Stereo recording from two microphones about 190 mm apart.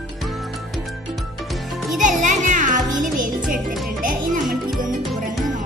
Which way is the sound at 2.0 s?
40° right (ahead or behind).